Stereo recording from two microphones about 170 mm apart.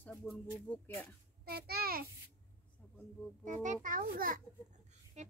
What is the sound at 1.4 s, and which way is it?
Speech, 65° right (ahead or behind).